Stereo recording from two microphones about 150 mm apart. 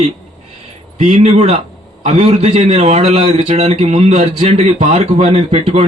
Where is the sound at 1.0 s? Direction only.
50° right (ahead or behind).